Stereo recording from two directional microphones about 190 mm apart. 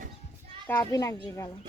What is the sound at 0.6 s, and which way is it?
Speech, 10° left (ahead or behind).